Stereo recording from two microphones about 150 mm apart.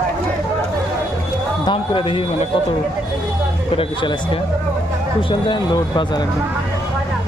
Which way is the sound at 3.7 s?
35° left (ahead or behind).